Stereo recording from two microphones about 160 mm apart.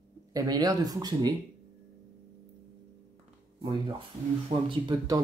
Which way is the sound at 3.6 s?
30° right (ahead or behind).